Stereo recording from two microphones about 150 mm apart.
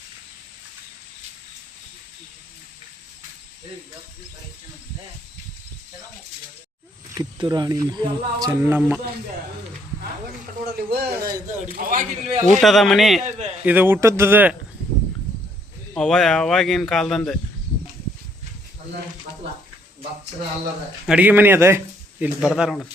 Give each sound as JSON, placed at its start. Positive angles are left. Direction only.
{"t": 7.1, "sound": "speech", "side_deg": -30}
{"t": 10.8, "sound": "speech", "side_deg": -90}
{"t": 11.3, "sound": "a man's voice", "side_deg": -70}
{"t": 12.5, "sound": "speech", "side_deg": 0}
{"t": 13.7, "sound": "speech", "side_deg": -10}
{"t": 16.0, "sound": "speech", "side_deg": 5}
{"t": 21.1, "sound": "speech", "side_deg": -10}
{"t": 22.2, "sound": "speech", "side_deg": -5}